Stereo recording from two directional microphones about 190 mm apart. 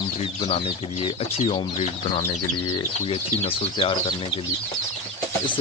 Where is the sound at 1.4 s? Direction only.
30° left (ahead or behind).